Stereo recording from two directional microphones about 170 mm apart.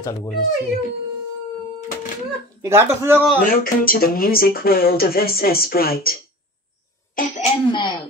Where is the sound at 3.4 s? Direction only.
55° left (ahead or behind).